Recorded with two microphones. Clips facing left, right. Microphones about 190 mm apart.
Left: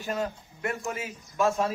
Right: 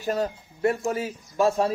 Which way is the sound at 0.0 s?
40° right (ahead or behind).